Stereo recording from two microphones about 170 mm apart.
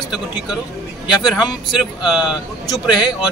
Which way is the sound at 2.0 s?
5° right (ahead or behind).